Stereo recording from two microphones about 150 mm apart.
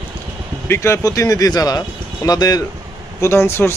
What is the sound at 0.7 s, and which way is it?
Speech, 20° left (ahead or behind).